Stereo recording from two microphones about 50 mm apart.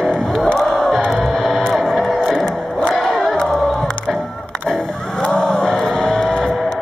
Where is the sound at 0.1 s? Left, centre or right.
Centre.